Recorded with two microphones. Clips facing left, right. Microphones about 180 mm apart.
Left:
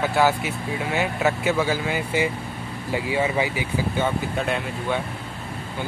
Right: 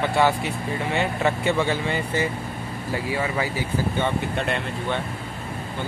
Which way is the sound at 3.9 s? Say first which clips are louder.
Left 2 dB; 5° left (ahead or behind).